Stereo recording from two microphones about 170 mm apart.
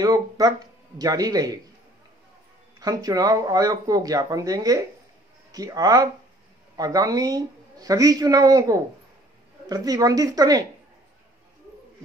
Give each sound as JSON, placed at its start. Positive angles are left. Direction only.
{"t": 0.0, "sound": "speech", "side_deg": -20}
{"t": 2.8, "sound": "speech", "side_deg": -20}